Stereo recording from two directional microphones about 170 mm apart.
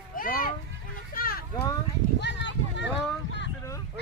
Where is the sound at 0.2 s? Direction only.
55° left (ahead or behind).